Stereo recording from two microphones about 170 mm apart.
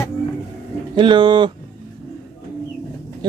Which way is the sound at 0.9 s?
25° right (ahead or behind).